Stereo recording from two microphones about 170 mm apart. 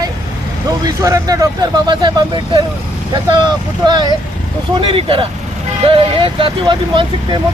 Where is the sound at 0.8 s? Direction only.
20° right (ahead or behind).